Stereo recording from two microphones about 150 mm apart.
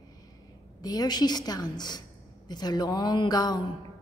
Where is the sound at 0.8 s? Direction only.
25° left (ahead or behind).